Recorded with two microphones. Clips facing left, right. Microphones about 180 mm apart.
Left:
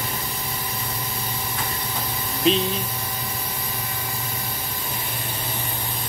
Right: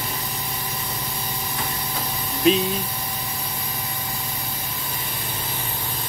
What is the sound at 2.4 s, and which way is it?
Speech, 5° right (ahead or behind).